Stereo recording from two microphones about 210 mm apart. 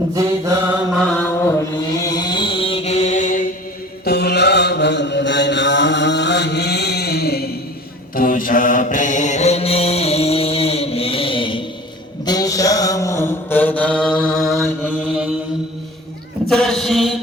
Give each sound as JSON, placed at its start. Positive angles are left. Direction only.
{"t": 0.1, "sound": "mantra", "side_deg": -15}
{"t": 1.1, "sound": "mantra", "side_deg": 10}
{"t": 4.0, "sound": "mantra", "side_deg": 50}
{"t": 16.5, "sound": "a sound", "side_deg": 0}